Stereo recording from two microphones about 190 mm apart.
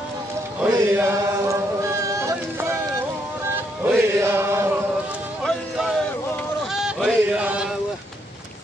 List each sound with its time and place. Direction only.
0.6 s chant: 15° right (ahead or behind)
3.8 s chant: 10° right (ahead or behind)
5.4 s music: centre (ahead or behind)
6.7 s a sound: centre (ahead or behind)